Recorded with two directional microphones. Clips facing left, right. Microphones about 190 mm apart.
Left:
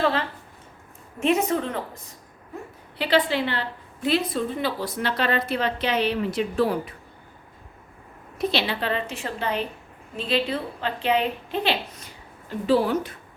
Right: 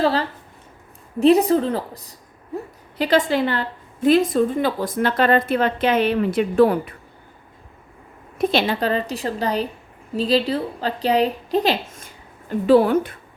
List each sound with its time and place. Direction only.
0.0 s a woman's voice: 35° right (ahead or behind); by 6.9 s 55° right (ahead or behind)
8.4 s a woman's voice: 50° right (ahead or behind)
12.6 s speech: 55° right (ahead or behind)